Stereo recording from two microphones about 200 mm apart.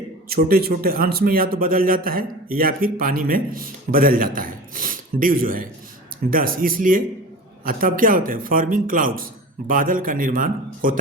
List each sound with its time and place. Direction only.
0.3 s a man's voice: 50° right (ahead or behind)